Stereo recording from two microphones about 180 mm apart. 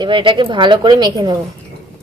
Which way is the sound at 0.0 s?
25° right (ahead or behind).